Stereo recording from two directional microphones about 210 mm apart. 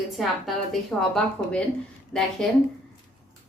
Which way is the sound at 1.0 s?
5° left (ahead or behind).